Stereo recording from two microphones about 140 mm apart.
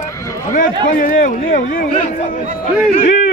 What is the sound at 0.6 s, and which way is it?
Speech, 75° left (ahead or behind).